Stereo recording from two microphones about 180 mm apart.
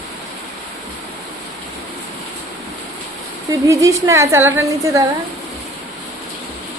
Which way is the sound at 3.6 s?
15° right (ahead or behind).